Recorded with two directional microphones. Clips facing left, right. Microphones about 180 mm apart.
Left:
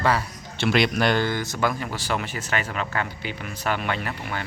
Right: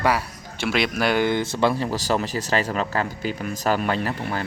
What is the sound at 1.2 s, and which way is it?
Speech, 25° right (ahead or behind).